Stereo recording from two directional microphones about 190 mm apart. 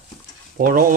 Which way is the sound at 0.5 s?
50° right (ahead or behind).